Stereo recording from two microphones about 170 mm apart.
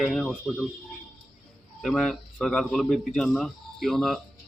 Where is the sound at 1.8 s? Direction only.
Centre (ahead or behind).